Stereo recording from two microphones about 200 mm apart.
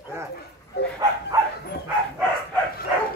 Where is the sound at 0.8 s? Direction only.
55° left (ahead or behind).